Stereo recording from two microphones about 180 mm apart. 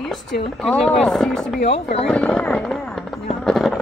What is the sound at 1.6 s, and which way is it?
Speech, 35° left (ahead or behind).